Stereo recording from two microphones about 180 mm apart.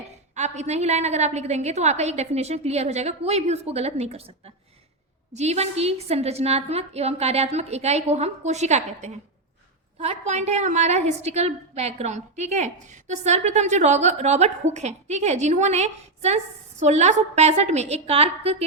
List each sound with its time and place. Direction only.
0.3 s a woman's voice: 40° right (ahead or behind)